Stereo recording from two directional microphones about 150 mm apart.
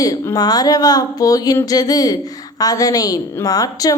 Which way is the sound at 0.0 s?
25° left (ahead or behind).